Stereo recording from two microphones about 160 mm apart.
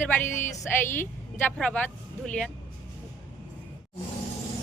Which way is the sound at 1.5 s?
5° left (ahead or behind).